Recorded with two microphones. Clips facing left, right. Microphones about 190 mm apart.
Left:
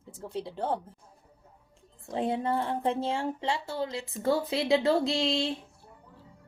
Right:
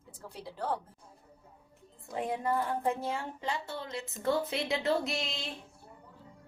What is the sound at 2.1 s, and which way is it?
Speech, 30° left (ahead or behind).